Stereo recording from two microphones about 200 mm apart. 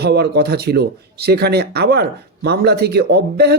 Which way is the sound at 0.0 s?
55° right (ahead or behind).